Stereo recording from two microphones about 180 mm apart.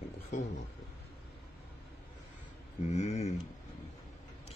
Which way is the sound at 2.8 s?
40° left (ahead or behind).